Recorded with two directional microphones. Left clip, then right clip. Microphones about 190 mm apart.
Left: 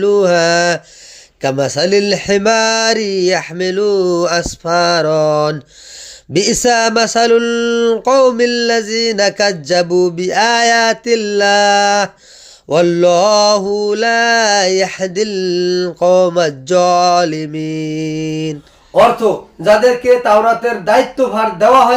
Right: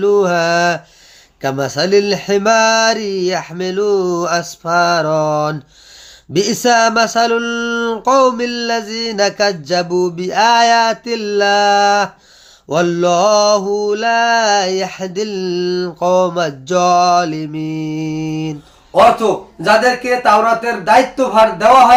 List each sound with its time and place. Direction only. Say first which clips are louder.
0.0 s mantra: left 2 dB; 20° left (ahead or behind)
19.6 s speech: left 3 dB; 5° right (ahead or behind)